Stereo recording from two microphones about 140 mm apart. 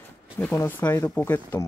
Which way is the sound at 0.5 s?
15° left (ahead or behind).